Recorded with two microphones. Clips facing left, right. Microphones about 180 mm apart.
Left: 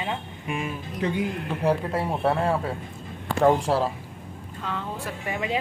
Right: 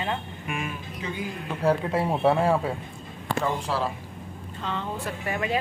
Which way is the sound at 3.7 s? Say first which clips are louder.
Left 5 dB; 50° left (ahead or behind).